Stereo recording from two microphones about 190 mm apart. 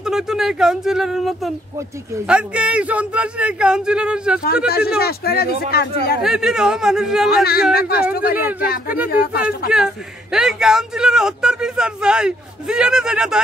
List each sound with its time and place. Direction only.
0.0 s speech: 5° right (ahead or behind)
4.6 s speech: 55° left (ahead or behind)
6.2 s speech: 5° right (ahead or behind)
7.7 s speech: 55° left (ahead or behind)
9.7 s speech: 5° right (ahead or behind)